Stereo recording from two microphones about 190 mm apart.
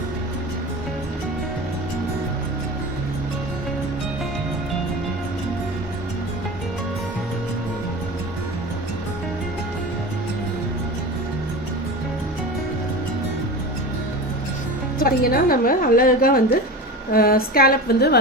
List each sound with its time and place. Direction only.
14.9 s a woman's voice: 50° left (ahead or behind)